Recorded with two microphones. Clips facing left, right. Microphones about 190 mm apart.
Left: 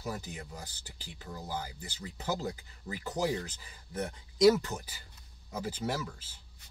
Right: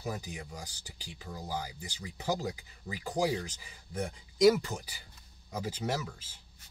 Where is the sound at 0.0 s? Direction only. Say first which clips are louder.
Right 1 dB; 15° right (ahead or behind).